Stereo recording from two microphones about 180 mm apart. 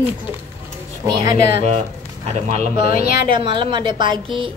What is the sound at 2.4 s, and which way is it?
Speech, 40° right (ahead or behind).